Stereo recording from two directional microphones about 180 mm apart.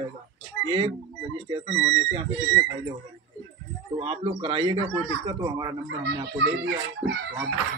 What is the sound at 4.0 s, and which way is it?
Speech, 30° right (ahead or behind).